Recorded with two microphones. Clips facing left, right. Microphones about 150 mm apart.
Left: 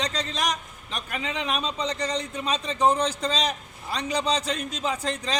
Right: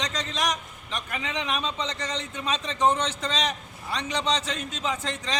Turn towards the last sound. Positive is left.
turn(degrees=35)  # may be behind; listen again after turning